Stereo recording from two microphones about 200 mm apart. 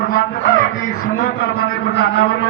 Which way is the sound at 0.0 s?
45° left (ahead or behind).